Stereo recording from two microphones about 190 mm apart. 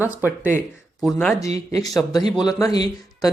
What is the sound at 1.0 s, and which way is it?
Speech, centre (ahead or behind).